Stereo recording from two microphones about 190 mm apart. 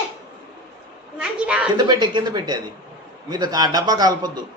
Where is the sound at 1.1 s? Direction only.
5° right (ahead or behind).